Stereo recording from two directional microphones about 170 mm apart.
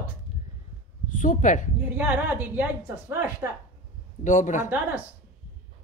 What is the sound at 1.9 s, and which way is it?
A woman's voice, 10° right (ahead or behind).